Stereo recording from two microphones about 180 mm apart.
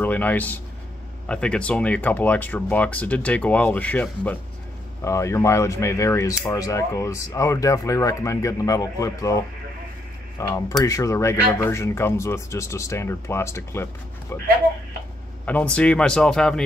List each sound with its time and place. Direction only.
0.0 s speech: 10° left (ahead or behind)
10.4 s speech: 20° left (ahead or behind)